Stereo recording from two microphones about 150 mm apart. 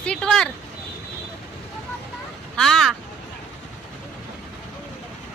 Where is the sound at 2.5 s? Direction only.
5° left (ahead or behind).